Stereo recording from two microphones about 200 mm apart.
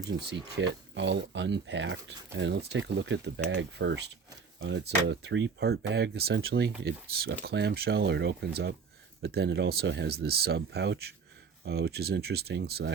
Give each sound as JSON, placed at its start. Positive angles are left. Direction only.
{"t": 0.3, "sound": "speech", "side_deg": -60}